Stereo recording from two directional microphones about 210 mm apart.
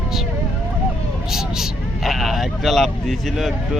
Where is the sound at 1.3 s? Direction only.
Centre (ahead or behind).